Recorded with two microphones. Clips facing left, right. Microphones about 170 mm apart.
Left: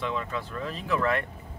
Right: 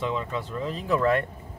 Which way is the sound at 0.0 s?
25° right (ahead or behind).